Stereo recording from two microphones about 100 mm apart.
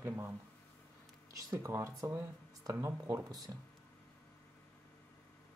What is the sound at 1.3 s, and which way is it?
Speech, 35° right (ahead or behind).